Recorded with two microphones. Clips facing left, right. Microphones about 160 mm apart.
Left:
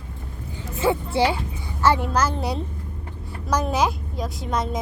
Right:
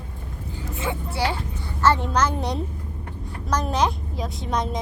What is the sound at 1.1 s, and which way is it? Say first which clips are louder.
A child's voice: left 5 dB; 15° left (ahead or behind).